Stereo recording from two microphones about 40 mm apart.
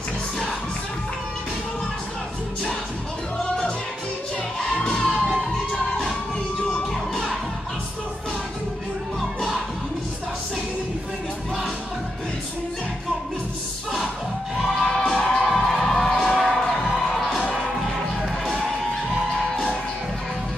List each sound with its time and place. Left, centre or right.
4.7 s music: left
5.1 s music: centre
5.7 s music: left
6.9 s music: centre
14.8 s music: centre
15.5 s crowd: centre
17.6 s music: centre